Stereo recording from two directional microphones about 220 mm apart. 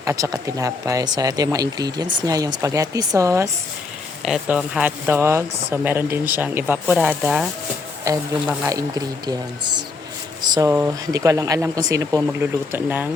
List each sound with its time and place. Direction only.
0.0 s speech: 15° right (ahead or behind)